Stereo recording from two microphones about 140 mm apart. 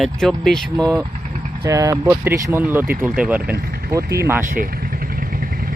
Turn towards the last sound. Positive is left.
turn(degrees=-90)